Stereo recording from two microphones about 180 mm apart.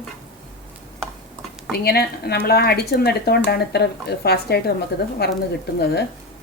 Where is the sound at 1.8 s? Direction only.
60° left (ahead or behind).